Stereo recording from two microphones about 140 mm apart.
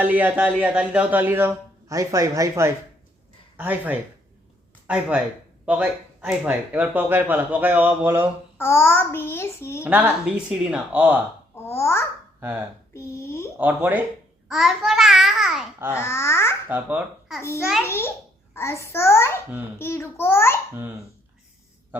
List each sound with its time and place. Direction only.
0.0 s speech: 10° right (ahead or behind)
8.5 s a child's voice: 15° left (ahead or behind)
9.8 s speech: 10° right (ahead or behind)
11.5 s a child's voice: 20° left (ahead or behind)
12.4 s speech: 15° right (ahead or behind)
12.9 s a child's voice: 20° left (ahead or behind)
13.6 s a child's voice: 10° right (ahead or behind)
16.0 s a child's voice: 20° left (ahead or behind)
16.6 s speech: 10° right (ahead or behind)
17.8 s a child's voice: 20° left (ahead or behind)